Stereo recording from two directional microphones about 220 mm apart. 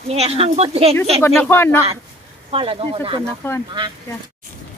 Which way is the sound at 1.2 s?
10° left (ahead or behind).